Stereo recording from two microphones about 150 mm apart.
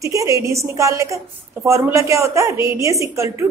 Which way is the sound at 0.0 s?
20° right (ahead or behind).